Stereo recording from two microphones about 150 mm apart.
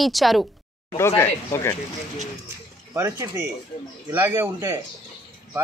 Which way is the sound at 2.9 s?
20° right (ahead or behind).